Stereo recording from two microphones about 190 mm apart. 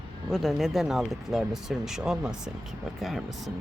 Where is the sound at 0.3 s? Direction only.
Centre (ahead or behind).